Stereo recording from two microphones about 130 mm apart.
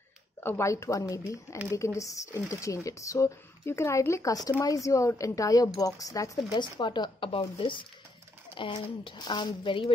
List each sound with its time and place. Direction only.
0.4 s speech: 20° left (ahead or behind); by 9.9 s 40° left (ahead or behind)